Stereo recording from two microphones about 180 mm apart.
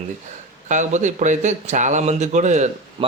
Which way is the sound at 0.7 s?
40° right (ahead or behind).